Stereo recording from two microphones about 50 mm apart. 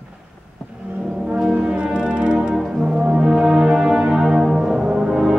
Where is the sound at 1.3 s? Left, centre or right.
Right.